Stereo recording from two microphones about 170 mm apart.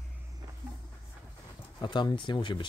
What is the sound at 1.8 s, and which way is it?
Speech, 25° left (ahead or behind).